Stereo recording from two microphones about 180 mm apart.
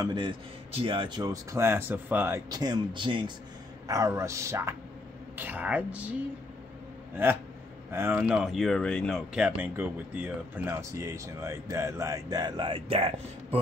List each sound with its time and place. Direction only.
0.0 s a man's voice: 25° right (ahead or behind); by 6.1 s 10° right (ahead or behind)
7.9 s speech: 15° right (ahead or behind)
8.2 s speech: 5° right (ahead or behind); by 13.6 s 35° right (ahead or behind)